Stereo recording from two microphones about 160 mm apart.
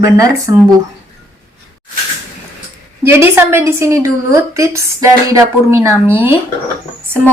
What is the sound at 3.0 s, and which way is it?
A woman's voice, 15° right (ahead or behind).